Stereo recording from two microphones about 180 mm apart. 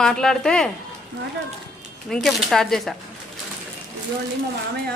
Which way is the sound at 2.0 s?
Centre (ahead or behind).